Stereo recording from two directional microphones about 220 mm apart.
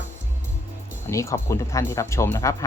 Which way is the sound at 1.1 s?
15° left (ahead or behind).